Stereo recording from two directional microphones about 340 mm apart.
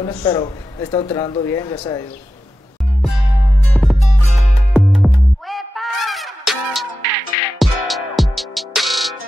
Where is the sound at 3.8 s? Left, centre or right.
Centre.